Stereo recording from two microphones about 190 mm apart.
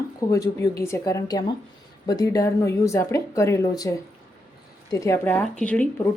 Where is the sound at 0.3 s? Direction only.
20° left (ahead or behind).